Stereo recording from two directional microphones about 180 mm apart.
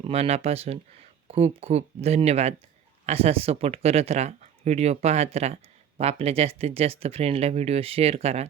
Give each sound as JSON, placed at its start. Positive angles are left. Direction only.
{"t": 0.0, "sound": "speech", "side_deg": -35}